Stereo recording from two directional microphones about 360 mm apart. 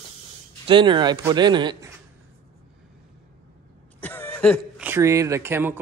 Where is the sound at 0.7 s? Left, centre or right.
Centre.